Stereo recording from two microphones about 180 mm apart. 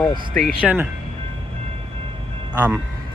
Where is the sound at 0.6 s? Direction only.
10° right (ahead or behind).